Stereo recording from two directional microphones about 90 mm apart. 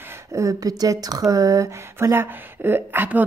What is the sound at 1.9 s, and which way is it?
Speech, 25° right (ahead or behind).